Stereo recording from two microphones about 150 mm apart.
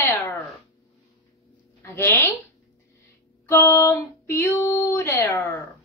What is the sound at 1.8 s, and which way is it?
Female singing, 15° left (ahead or behind).